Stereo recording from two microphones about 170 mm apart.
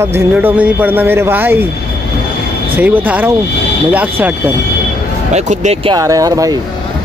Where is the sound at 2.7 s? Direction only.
10° right (ahead or behind).